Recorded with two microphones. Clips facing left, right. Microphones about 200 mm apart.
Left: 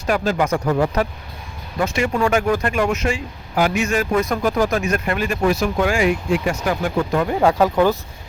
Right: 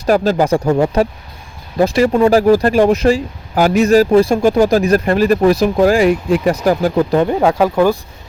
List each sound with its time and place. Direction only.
0.0 s speech: 35° right (ahead or behind)
7.4 s speech: 10° right (ahead or behind)